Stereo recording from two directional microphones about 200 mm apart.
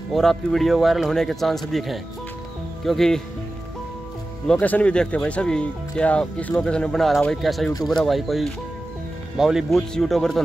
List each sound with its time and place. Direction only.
0.1 s speech: centre (ahead or behind)
4.5 s speech: 5° left (ahead or behind)